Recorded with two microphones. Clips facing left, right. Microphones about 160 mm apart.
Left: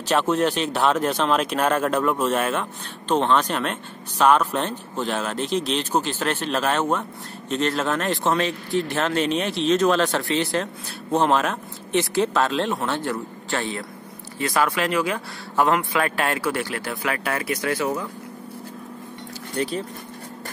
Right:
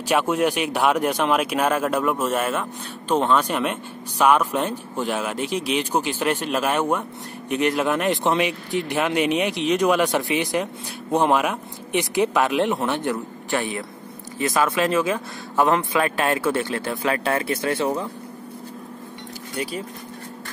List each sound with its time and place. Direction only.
0.1 s a man's voice: 10° right (ahead or behind); by 18.0 s 25° right (ahead or behind)
19.5 s speech: 10° right (ahead or behind)